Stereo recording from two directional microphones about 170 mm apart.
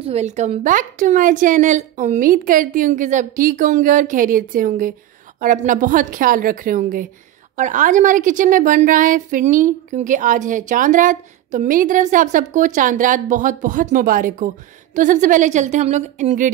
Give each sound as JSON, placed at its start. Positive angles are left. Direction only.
{"t": 0.0, "sound": "a woman's voice", "side_deg": -40}